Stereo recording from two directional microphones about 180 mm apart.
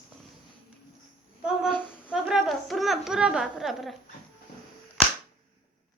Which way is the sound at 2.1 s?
5° right (ahead or behind).